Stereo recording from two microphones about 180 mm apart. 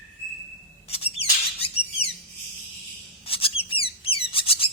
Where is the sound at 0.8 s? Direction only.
35° left (ahead or behind).